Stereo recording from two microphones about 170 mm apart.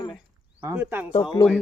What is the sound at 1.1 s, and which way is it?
Speech, 30° left (ahead or behind).